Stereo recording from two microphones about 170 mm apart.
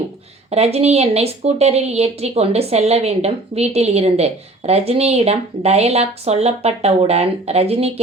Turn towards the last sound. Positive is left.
turn(degrees=-35)  # may be behind; listen again after turning